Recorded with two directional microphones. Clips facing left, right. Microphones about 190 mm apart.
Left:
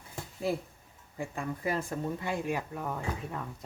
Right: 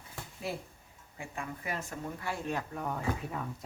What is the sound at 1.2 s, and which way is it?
Speech, 35° left (ahead or behind).